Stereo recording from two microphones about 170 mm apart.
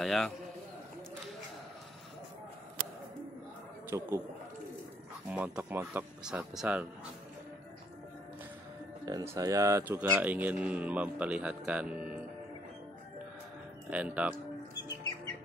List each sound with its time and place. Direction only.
0.0 s a man's voice: centre (ahead or behind)
3.9 s speech: 15° right (ahead or behind)
5.3 s speech: 10° right (ahead or behind)
9.0 s speech: 20° right (ahead or behind)
13.8 s speech: 5° right (ahead or behind)